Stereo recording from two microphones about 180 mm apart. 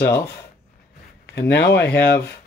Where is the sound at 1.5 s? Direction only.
70° left (ahead or behind).